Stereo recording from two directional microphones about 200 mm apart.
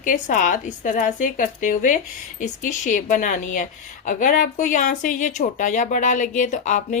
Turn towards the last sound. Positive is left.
turn(degrees=35)  # may be behind; listen again after turning